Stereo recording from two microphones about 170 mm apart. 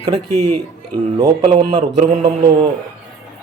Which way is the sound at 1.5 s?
35° right (ahead or behind).